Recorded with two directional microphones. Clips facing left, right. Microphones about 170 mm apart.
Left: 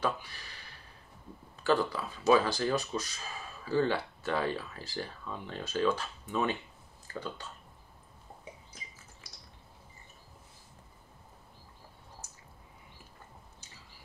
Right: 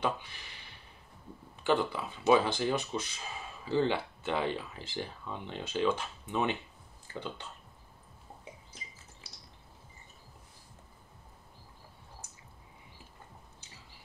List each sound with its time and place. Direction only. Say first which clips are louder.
0.0 s speech: even; 20° right (ahead or behind)